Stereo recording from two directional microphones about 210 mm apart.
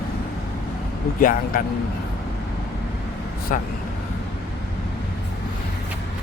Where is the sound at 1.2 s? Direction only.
40° left (ahead or behind).